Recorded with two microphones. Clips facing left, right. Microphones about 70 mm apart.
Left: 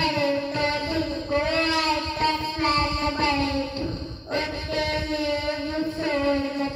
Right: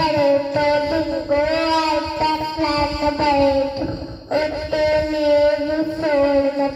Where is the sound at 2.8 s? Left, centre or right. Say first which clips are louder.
Right 6 dB; right.